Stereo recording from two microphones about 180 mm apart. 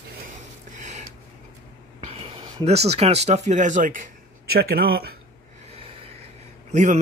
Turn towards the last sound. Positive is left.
turn(degrees=-40)  # may be behind; listen again after turning